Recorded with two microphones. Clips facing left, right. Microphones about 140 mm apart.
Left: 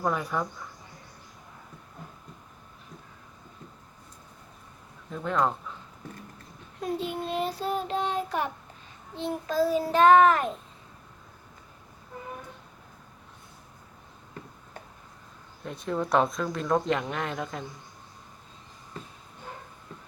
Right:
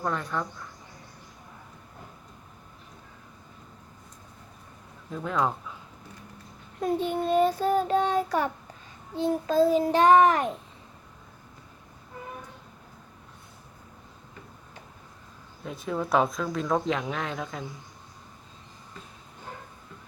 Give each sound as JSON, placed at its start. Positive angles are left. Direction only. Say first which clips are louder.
{"t": 0.0, "sound": "speech", "louder": "left 2 dB", "side_deg": 10}
{"t": 5.1, "sound": "speech", "louder": "left 1 dB", "side_deg": 0}
{"t": 7.0, "sound": "child singing", "louder": "right 9 dB", "side_deg": -45}
{"t": 9.1, "sound": "child singing", "louder": "right 4 dB", "side_deg": -25}
{"t": 15.6, "sound": "speech", "louder": "left 1 dB", "side_deg": 0}